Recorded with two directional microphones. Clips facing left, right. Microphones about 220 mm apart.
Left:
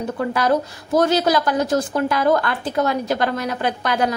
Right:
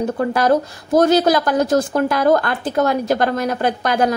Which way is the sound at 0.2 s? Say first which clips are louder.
Right 2 dB; 45° right (ahead or behind).